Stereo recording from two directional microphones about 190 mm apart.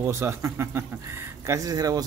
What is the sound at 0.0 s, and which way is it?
Speech, 15° right (ahead or behind).